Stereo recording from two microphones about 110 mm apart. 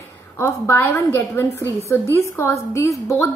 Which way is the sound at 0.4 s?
20° left (ahead or behind).